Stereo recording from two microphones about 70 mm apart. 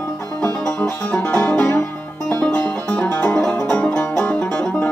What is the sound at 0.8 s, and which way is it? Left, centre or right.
Music, left.